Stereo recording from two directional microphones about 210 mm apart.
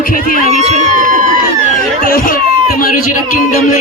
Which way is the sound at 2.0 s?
40° left (ahead or behind).